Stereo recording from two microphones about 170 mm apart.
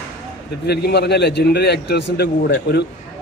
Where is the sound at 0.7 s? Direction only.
75° left (ahead or behind).